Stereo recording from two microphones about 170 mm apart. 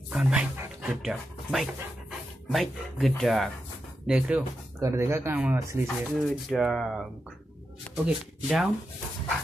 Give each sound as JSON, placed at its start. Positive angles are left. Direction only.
{"t": 0.1, "sound": "speech", "side_deg": -5}
{"t": 4.7, "sound": "speech", "side_deg": -20}
{"t": 5.9, "sound": "speech", "side_deg": 0}